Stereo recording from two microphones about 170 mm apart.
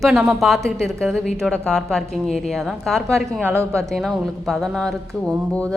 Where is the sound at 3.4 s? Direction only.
15° right (ahead or behind).